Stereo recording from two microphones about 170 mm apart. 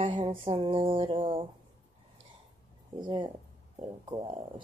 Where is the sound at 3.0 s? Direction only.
25° right (ahead or behind).